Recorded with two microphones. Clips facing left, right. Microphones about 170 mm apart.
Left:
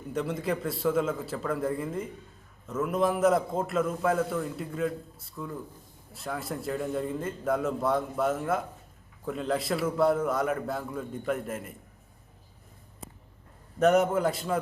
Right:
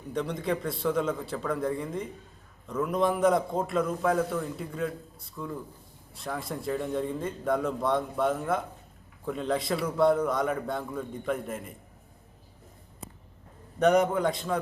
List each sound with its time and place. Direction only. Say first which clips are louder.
0.1 s a man's voice: even; 5° left (ahead or behind)
13.7 s a man's voice: even; centre (ahead or behind)